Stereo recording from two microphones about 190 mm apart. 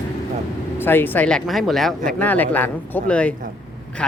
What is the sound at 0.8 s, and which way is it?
Speech, 10° left (ahead or behind).